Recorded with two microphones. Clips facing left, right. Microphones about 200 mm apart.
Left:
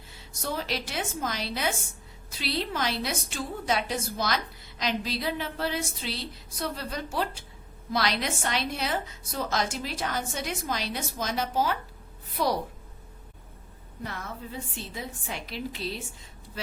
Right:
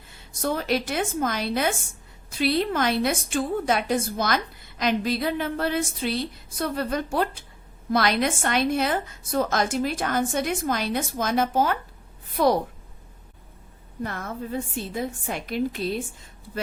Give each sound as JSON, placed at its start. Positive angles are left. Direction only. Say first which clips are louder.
{"t": 0.4, "sound": "a woman's voice", "louder": "right 7 dB", "side_deg": -55}
{"t": 14.0, "sound": "a woman's voice", "louder": "right 6 dB", "side_deg": -50}